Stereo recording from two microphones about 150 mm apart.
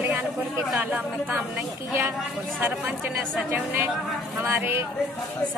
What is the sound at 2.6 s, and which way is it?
Speech, 10° right (ahead or behind).